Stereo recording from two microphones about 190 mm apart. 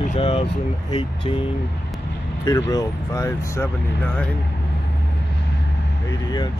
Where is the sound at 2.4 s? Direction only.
20° left (ahead or behind).